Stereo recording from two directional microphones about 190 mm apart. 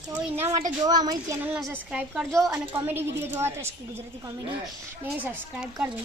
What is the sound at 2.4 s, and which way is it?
A woman's voice, 15° right (ahead or behind).